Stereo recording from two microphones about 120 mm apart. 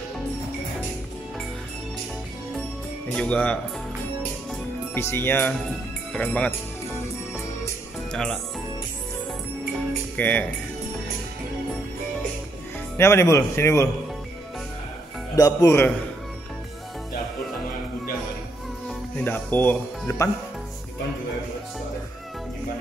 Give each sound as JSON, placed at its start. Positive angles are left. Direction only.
{"t": 3.1, "sound": "speech", "side_deg": 10}
{"t": 4.9, "sound": "speech", "side_deg": 20}
{"t": 8.1, "sound": "speech", "side_deg": 10}
{"t": 10.1, "sound": "speech", "side_deg": 10}
{"t": 12.9, "sound": "speech", "side_deg": 20}
{"t": 15.3, "sound": "speech", "side_deg": 30}
{"t": 18.9, "sound": "speech", "side_deg": 10}